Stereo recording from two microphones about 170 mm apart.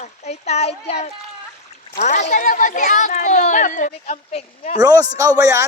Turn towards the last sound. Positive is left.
turn(degrees=-20)  # may be behind; listen again after turning